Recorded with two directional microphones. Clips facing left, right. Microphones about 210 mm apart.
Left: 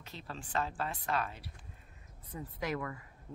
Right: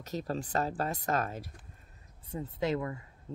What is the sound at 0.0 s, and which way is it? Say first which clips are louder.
Speech: right 11 dB; 40° right (ahead or behind).